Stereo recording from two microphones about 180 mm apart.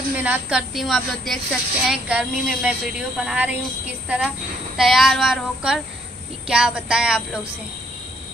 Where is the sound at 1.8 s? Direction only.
5° right (ahead or behind).